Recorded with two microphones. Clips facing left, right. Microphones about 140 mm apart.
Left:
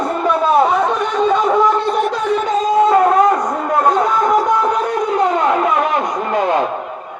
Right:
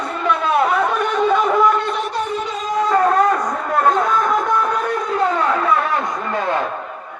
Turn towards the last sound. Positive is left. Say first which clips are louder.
# left 5 dB
turn(degrees=15)  # may be behind; listen again after turning